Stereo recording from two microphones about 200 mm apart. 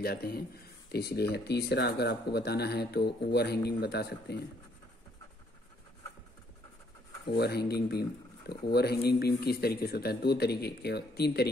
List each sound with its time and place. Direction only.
0.0 s speech: 50° left (ahead or behind)
7.2 s speech: 55° left (ahead or behind)